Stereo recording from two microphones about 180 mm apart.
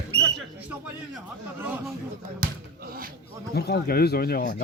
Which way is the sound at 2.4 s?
55° right (ahead or behind).